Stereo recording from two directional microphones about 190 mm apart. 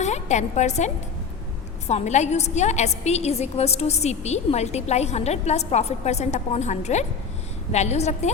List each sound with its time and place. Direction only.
0.0 s a woman's voice: 35° left (ahead or behind)
1.9 s a woman's voice: 35° left (ahead or behind)